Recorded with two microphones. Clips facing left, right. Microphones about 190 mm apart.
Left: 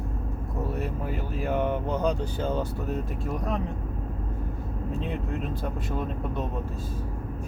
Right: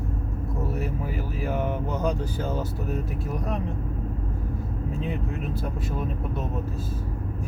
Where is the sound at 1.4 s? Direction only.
5° right (ahead or behind).